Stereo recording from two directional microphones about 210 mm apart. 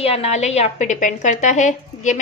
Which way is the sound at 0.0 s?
30° left (ahead or behind).